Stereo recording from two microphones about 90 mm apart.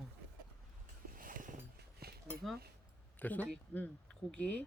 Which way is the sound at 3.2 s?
20° left (ahead or behind).